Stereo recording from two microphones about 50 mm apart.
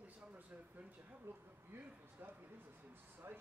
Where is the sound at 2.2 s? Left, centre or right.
Right.